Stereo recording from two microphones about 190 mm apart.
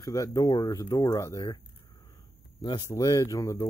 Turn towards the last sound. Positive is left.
turn(degrees=15)  # may be behind; listen again after turning